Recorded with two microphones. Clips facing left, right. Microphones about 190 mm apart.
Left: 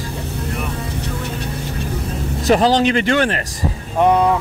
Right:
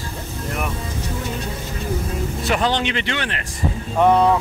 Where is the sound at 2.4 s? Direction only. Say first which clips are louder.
Left 8 dB; 40° left (ahead or behind).